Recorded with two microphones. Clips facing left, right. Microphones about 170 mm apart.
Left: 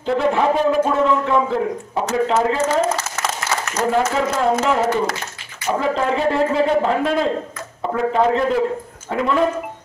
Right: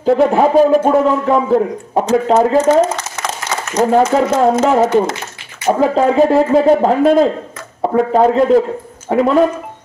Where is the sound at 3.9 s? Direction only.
45° right (ahead or behind).